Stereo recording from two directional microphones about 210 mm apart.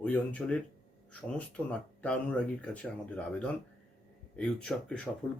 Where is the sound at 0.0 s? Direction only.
5° left (ahead or behind).